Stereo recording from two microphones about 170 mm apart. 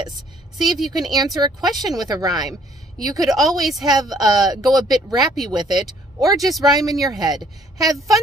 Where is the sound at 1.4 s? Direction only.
25° right (ahead or behind).